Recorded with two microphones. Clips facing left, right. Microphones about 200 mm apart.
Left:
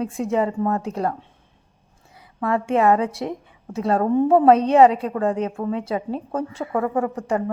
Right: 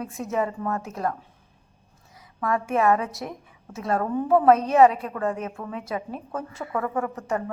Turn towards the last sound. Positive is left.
turn(degrees=30)  # may be behind; listen again after turning